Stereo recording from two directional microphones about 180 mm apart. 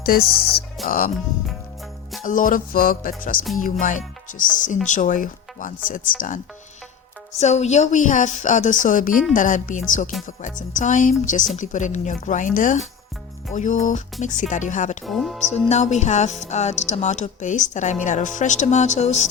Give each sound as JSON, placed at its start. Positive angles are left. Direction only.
{"t": 0.0, "sound": "a woman's voice", "side_deg": 55}
{"t": 2.2, "sound": "a woman's voice", "side_deg": 50}
{"t": 15.0, "sound": "speech", "side_deg": 0}
{"t": 15.7, "sound": "speech", "side_deg": 40}